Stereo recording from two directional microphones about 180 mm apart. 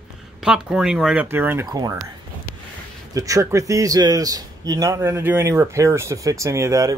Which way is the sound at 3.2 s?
20° right (ahead or behind).